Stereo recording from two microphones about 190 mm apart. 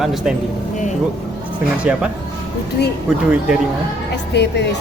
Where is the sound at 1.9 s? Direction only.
5° right (ahead or behind).